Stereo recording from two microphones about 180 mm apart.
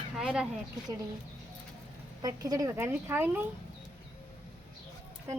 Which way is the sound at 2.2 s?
20° right (ahead or behind).